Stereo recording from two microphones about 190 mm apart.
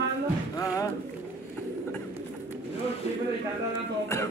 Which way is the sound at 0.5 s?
15° left (ahead or behind).